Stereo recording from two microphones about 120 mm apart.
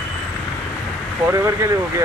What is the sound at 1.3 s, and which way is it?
Speech, 20° right (ahead or behind).